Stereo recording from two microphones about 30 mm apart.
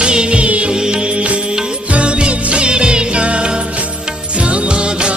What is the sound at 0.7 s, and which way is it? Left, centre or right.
Music, right.